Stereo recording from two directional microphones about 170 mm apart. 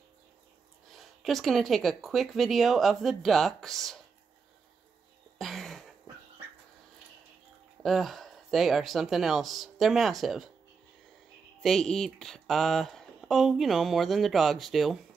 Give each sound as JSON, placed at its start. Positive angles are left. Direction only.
{"t": 0.9, "sound": "speech", "side_deg": 0}
{"t": 5.4, "sound": "a sound", "side_deg": 0}
{"t": 7.8, "sound": "speech", "side_deg": 0}
{"t": 11.6, "sound": "speech", "side_deg": 0}